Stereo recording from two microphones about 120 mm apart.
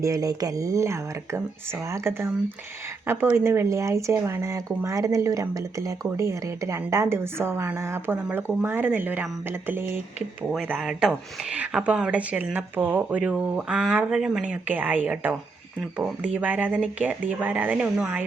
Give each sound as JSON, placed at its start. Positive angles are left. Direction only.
{"t": 0.0, "sound": "speech", "side_deg": -30}
{"t": 10.5, "sound": "speech", "side_deg": -5}